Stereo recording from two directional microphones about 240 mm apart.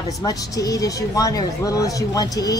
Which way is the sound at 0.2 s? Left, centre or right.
Centre.